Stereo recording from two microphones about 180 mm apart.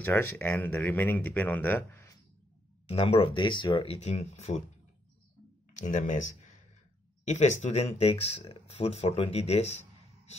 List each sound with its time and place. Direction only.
0.0 s speech: 10° left (ahead or behind)
2.9 s speech: 35° left (ahead or behind)
5.8 s speech: 45° left (ahead or behind)
7.2 s speech: 40° left (ahead or behind)